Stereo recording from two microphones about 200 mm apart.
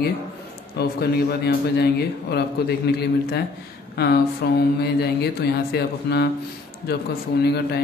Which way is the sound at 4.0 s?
55° left (ahead or behind).